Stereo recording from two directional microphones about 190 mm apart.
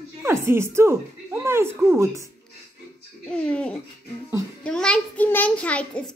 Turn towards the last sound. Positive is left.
turn(degrees=5)  # may be behind; listen again after turning